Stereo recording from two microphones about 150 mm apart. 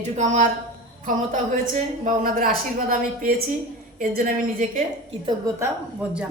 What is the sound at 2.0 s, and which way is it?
A woman's voice, 65° right (ahead or behind).